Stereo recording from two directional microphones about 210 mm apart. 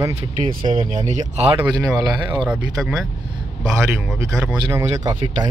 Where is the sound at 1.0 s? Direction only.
35° right (ahead or behind).